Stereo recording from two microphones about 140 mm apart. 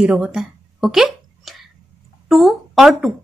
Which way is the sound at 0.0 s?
5° right (ahead or behind).